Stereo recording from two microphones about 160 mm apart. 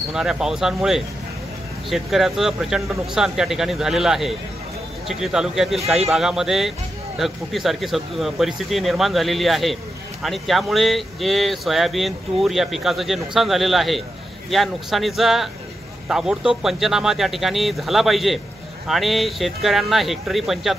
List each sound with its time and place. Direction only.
0.1 s speech: 5° right (ahead or behind)